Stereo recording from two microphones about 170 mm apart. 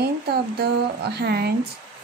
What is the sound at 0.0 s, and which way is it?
Speech, 65° right (ahead or behind).